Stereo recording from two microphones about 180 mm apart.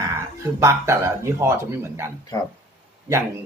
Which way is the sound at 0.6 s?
15° right (ahead or behind).